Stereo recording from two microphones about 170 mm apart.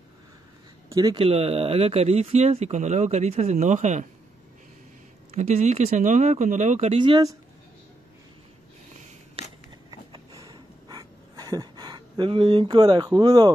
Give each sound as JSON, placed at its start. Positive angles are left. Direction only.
{"t": 0.8, "sound": "speech", "side_deg": -20}
{"t": 1.2, "sound": "speech", "side_deg": -35}
{"t": 5.3, "sound": "speech", "side_deg": -40}
{"t": 7.0, "sound": "speech", "side_deg": -25}
{"t": 9.8, "sound": "a sound", "side_deg": -20}